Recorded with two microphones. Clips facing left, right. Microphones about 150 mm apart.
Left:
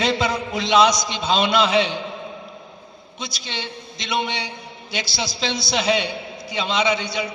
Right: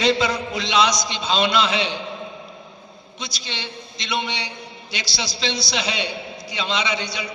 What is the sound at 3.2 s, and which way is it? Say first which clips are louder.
A man's voice: left 2 dB; 50° left (ahead or behind).